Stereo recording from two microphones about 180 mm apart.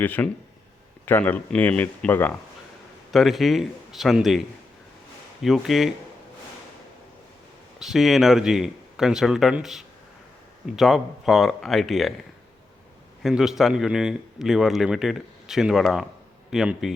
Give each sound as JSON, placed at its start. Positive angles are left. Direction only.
{"t": 0.0, "sound": "speech", "side_deg": 10}
{"t": 3.1, "sound": "speech", "side_deg": 0}
{"t": 7.8, "sound": "speech", "side_deg": 0}
{"t": 13.2, "sound": "speech", "side_deg": 0}